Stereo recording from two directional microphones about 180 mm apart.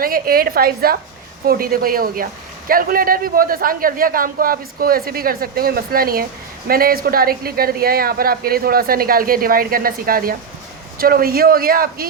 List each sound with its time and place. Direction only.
0.0 s a man's voice: 55° right (ahead or behind)